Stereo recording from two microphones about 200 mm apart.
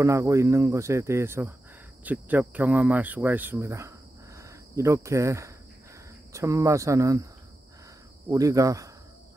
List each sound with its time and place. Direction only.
0.0 s speech: 15° right (ahead or behind)
8.3 s speech: 15° right (ahead or behind)